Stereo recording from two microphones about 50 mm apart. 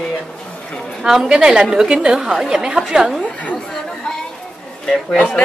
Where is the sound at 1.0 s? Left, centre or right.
Centre.